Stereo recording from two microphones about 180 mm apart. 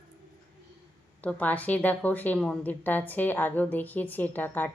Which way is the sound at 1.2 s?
10° left (ahead or behind).